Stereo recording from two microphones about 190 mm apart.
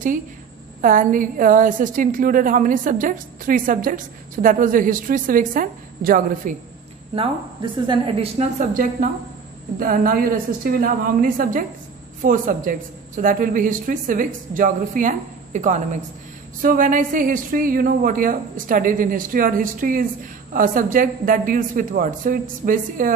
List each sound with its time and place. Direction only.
0.7 s a woman's voice: 45° right (ahead or behind)
7.2 s a woman's voice: 25° right (ahead or behind)
9.8 s a woman's voice: 50° right (ahead or behind)